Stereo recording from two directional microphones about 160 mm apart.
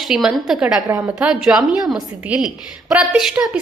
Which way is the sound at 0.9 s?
15° right (ahead or behind).